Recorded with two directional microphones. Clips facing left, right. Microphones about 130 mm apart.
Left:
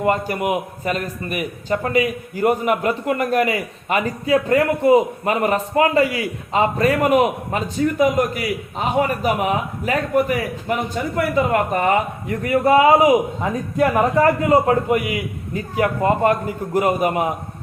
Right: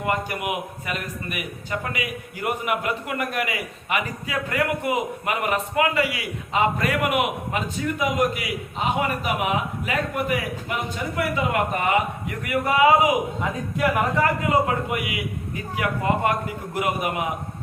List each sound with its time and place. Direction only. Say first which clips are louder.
0.0 s a man's voice: left 6 dB; 30° left (ahead or behind)